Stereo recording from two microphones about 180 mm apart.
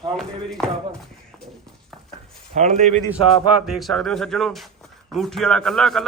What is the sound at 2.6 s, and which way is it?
Speech, 40° right (ahead or behind).